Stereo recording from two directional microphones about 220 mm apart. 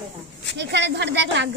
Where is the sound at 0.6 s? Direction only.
55° right (ahead or behind).